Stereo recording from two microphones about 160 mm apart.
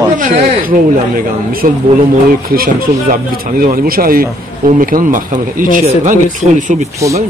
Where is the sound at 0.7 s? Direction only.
60° right (ahead or behind).